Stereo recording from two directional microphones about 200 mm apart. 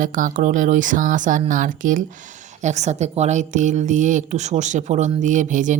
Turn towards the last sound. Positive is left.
turn(degrees=-40)  # may be behind; listen again after turning